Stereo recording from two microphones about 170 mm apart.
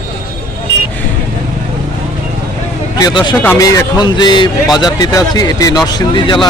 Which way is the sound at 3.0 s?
25° left (ahead or behind).